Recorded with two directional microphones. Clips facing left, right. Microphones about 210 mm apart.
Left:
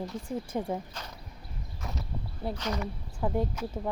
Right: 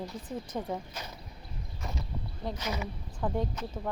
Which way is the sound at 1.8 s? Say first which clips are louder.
Even; centre (ahead or behind).